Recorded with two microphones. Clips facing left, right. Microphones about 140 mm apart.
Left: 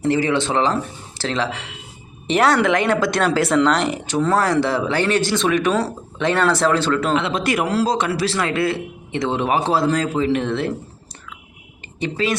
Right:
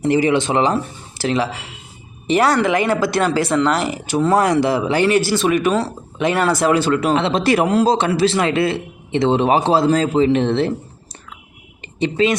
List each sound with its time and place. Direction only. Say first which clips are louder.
0.0 s speech: right 3 dB; 15° right (ahead or behind)
7.2 s a man's voice: right 4 dB; 30° right (ahead or behind)
11.8 s speech: right 6 dB; 25° right (ahead or behind)